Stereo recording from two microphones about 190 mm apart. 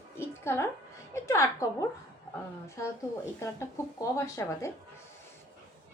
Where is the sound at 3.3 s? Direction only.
15° left (ahead or behind).